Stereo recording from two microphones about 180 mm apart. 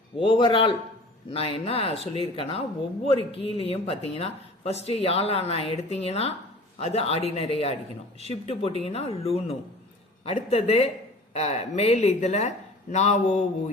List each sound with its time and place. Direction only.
0.2 s a man's voice: 25° left (ahead or behind)